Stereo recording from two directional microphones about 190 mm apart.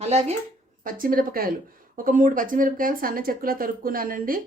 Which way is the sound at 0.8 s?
45° right (ahead or behind).